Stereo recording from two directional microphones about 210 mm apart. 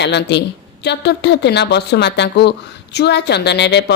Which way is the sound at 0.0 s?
55° left (ahead or behind).